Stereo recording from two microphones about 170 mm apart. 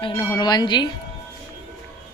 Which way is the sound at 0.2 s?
20° left (ahead or behind).